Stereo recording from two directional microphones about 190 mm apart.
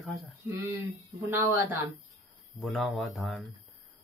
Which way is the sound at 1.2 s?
15° right (ahead or behind).